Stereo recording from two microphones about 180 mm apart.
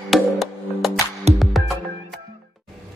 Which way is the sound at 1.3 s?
35° right (ahead or behind).